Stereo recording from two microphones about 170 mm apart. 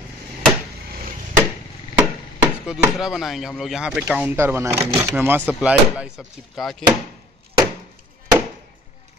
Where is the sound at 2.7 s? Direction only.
Centre (ahead or behind).